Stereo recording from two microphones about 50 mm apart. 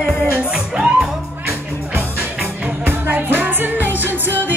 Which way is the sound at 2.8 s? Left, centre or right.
Right.